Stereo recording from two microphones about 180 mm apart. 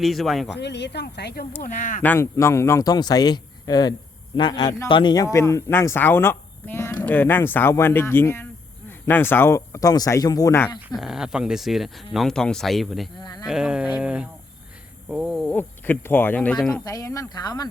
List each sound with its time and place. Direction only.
0.0 s speech: centre (ahead or behind)
0.5 s speech: 70° left (ahead or behind)
1.6 s speech: 45° left (ahead or behind)
2.0 s a man's voice: 10° left (ahead or behind)
10.8 s speech: centre (ahead or behind)
13.1 s speech: 25° left (ahead or behind)
13.5 s speech: 5° right (ahead or behind)
15.5 s speech: 10° left (ahead or behind)
16.8 s a man's voice: 20° left (ahead or behind)